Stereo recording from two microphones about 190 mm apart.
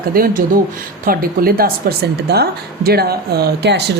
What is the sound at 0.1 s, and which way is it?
A woman's voice, 50° right (ahead or behind).